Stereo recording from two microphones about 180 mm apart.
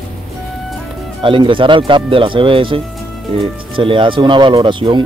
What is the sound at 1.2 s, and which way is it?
Speech, 25° right (ahead or behind).